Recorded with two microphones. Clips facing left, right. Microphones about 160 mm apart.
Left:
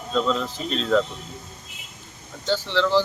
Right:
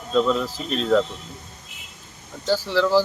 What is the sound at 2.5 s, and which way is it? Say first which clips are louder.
Speech: right 2 dB; 10° right (ahead or behind).